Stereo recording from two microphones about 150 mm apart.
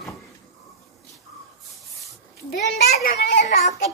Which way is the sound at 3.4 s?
50° left (ahead or behind).